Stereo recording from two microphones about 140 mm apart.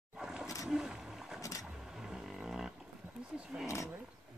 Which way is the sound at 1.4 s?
25° left (ahead or behind).